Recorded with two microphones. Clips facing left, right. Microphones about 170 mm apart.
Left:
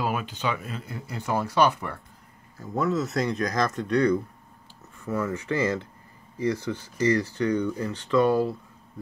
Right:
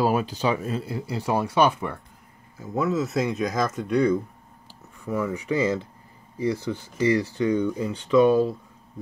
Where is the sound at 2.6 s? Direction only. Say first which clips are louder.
Right 1 dB; centre (ahead or behind).